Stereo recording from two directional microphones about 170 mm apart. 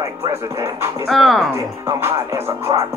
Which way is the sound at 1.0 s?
Centre (ahead or behind).